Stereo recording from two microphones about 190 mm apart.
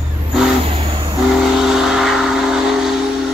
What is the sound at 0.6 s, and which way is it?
Vehicle, 30° right (ahead or behind).